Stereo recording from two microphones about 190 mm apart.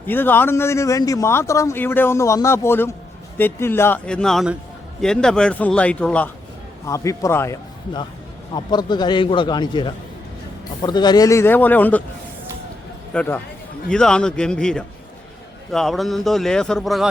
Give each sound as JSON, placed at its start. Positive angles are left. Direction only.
{"t": 0.1, "sound": "a man's voice", "side_deg": 10}
{"t": 13.1, "sound": "a man's voice", "side_deg": 10}